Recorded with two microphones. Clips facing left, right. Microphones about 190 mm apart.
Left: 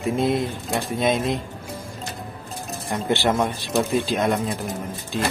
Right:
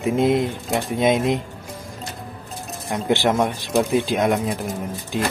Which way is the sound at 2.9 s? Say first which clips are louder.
Right 2 dB; 15° right (ahead or behind).